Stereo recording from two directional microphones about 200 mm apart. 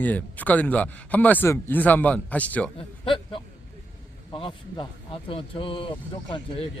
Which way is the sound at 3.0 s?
25° left (ahead or behind).